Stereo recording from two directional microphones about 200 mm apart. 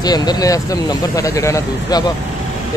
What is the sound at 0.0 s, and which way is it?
Speech, 20° left (ahead or behind).